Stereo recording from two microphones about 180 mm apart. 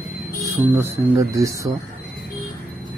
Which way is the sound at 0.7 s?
15° right (ahead or behind).